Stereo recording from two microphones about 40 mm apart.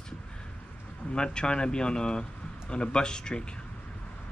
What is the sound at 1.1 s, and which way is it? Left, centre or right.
Speech, left.